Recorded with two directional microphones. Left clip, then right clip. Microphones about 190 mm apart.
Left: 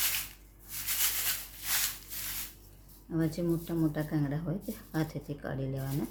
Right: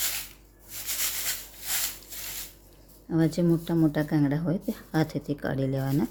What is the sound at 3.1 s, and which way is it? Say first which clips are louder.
Speech: right 7 dB; 35° right (ahead or behind).